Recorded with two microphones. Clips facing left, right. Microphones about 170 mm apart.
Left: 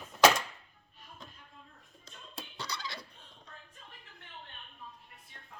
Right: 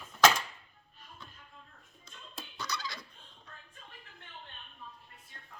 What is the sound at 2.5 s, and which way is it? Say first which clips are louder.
Turkey: right 2 dB; 30° left (ahead or behind).